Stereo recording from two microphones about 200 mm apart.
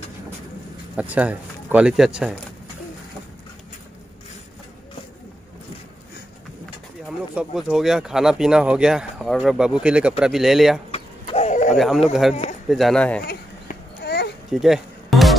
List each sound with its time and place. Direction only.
0.9 s speech: 5° right (ahead or behind)
7.3 s speech: 5° right (ahead or behind)
10.9 s a sound: 30° left (ahead or behind)
11.7 s speech: centre (ahead or behind)
14.0 s a sound: 55° left (ahead or behind)
14.5 s music: centre (ahead or behind)